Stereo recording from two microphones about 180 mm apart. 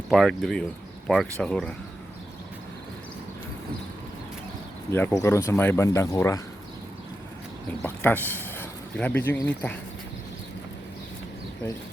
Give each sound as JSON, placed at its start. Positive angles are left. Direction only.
{"t": 0.1, "sound": "speech", "side_deg": 0}
{"t": 4.9, "sound": "speech", "side_deg": 15}
{"t": 7.8, "sound": "speech", "side_deg": 10}